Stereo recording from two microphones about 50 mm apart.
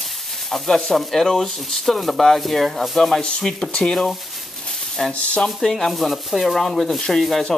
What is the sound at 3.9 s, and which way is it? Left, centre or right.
Speech, centre.